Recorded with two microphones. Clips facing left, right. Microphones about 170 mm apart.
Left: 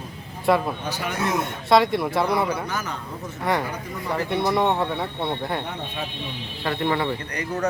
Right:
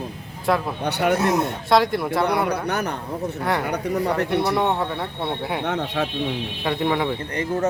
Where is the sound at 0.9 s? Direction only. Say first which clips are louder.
Right 7 dB; 65° right (ahead or behind).